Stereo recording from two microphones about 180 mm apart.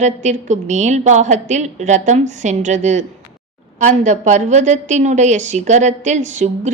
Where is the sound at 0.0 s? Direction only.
40° right (ahead or behind).